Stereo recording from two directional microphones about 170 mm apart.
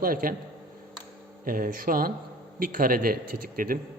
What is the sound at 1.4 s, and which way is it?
A man's voice, 55° right (ahead or behind).